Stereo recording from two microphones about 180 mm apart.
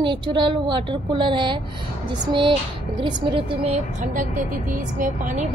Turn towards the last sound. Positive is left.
turn(degrees=-45)  # may be behind; listen again after turning